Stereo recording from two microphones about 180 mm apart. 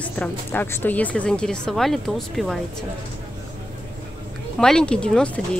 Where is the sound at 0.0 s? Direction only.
10° left (ahead or behind).